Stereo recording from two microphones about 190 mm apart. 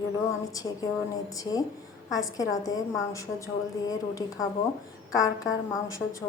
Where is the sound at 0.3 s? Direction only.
20° left (ahead or behind).